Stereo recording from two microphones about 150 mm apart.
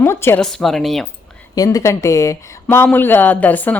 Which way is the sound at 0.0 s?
15° left (ahead or behind).